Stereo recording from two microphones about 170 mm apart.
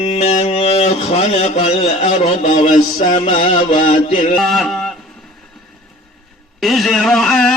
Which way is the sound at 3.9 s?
35° left (ahead or behind).